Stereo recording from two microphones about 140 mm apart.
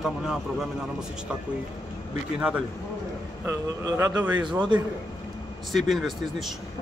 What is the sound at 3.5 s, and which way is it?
Speech, 20° right (ahead or behind).